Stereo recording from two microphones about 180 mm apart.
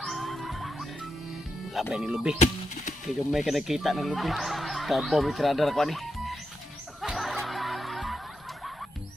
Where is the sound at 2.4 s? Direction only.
45° left (ahead or behind).